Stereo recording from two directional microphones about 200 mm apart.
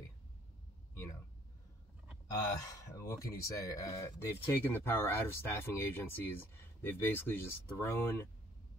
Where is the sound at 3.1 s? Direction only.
15° left (ahead or behind).